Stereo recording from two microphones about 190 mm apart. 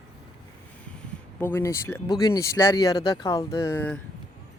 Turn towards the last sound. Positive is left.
turn(degrees=10)  # may be behind; listen again after turning